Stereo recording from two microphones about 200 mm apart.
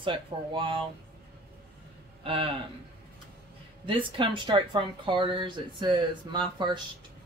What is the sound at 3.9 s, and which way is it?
Speech, 25° right (ahead or behind).